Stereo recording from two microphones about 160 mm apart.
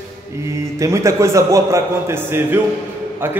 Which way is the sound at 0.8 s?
20° right (ahead or behind).